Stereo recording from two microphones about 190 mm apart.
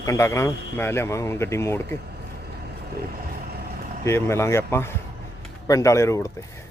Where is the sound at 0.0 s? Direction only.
15° left (ahead or behind).